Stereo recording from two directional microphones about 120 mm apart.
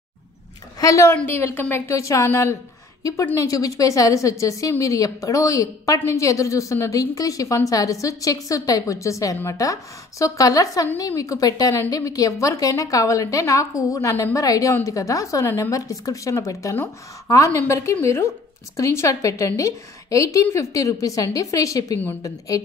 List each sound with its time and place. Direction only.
0.7 s a woman's voice: 25° left (ahead or behind)